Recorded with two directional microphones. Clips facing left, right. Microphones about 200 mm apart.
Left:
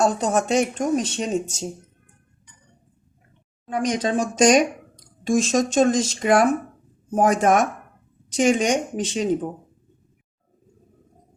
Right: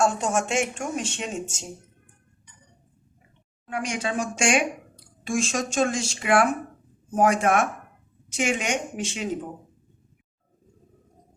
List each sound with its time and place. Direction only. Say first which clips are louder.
0.0 s speech: left 3 dB; 35° left (ahead or behind)
3.7 s speech: left 6 dB; 35° left (ahead or behind)